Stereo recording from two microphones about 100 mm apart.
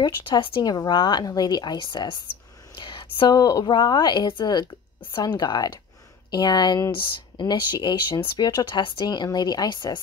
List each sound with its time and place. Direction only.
0.6 s speech: 45° left (ahead or behind)
2.7 s whispering: 55° left (ahead or behind)
3.3 s speech: 35° left (ahead or behind)